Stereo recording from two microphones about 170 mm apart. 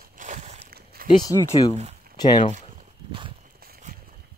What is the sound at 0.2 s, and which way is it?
Walk, 45° right (ahead or behind).